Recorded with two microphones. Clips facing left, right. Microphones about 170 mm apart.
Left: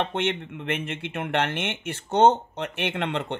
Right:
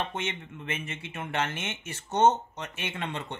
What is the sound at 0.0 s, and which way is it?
Speech, 65° left (ahead or behind).